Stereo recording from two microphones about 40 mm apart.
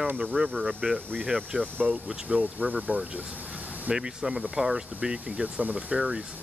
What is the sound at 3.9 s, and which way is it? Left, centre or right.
Speech, centre.